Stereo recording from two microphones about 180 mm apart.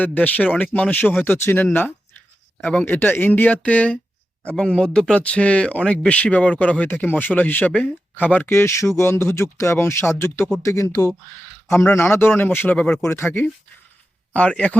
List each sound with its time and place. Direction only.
0.0 s speech: 10° left (ahead or behind)